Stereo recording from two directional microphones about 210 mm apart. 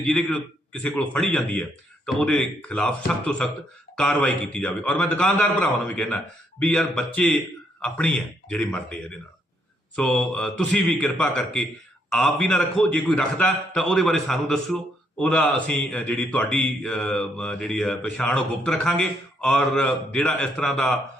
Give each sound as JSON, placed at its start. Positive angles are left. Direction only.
{"t": 0.0, "sound": "speech", "side_deg": 5}